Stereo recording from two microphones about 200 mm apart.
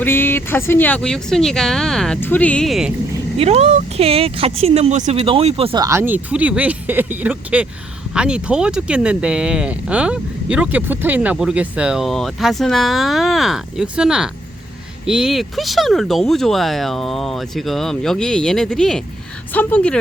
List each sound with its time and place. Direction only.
0.0 s speech: 10° left (ahead or behind)
3.3 s speech: 30° right (ahead or behind); by 20.0 s 5° left (ahead or behind)